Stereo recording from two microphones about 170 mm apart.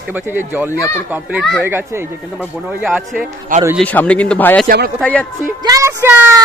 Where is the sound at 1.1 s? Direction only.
10° right (ahead or behind).